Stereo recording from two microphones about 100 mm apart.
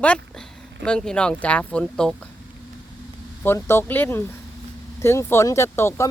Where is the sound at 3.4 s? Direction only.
25° left (ahead or behind).